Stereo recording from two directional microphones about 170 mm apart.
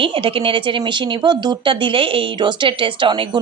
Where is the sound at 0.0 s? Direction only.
30° right (ahead or behind).